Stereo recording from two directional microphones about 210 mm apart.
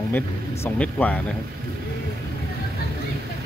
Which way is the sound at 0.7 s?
5° left (ahead or behind).